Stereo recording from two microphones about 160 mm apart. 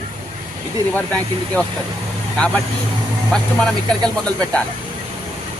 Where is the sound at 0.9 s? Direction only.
10° left (ahead or behind).